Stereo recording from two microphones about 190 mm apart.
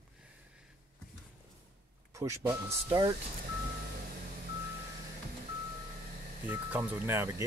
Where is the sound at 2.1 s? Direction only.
15° right (ahead or behind).